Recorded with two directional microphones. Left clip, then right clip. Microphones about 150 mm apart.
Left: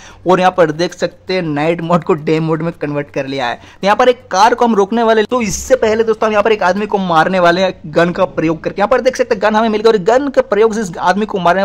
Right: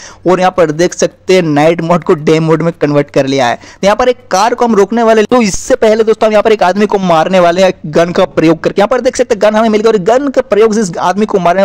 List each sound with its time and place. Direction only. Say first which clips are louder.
0.3 s a man's voice: right 2 dB; 25° right (ahead or behind)
1.0 s a man's voice: right 8 dB; 40° right (ahead or behind)
3.0 s a man's voice: right 9 dB; 40° right (ahead or behind); by 5.3 s 20° right (ahead or behind)
5.3 s a man's voice: right 4 dB; 65° right (ahead or behind); by 9.6 s 40° right (ahead or behind)
9.6 s a man's voice: right 3 dB; 25° right (ahead or behind)